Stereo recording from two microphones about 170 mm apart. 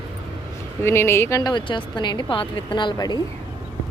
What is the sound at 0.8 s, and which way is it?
A woman's voice, 15° left (ahead or behind).